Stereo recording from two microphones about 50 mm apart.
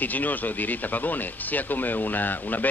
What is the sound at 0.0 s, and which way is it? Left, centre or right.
Speech, left.